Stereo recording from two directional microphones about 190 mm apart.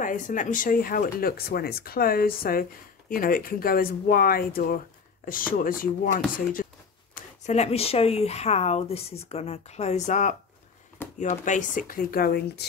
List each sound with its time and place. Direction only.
0.0 s speech: 45° left (ahead or behind)
7.2 s speech: 35° left (ahead or behind); by 12.6 s 55° left (ahead or behind)